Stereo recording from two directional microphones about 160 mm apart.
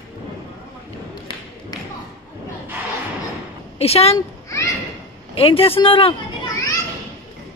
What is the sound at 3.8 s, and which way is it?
Speech, 40° left (ahead or behind).